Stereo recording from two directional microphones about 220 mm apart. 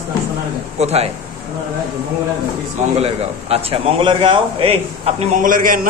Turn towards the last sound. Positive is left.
turn(degrees=-40)  # may be behind; listen again after turning